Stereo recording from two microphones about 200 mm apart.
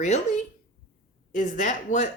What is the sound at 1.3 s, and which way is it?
Speech, 40° left (ahead or behind).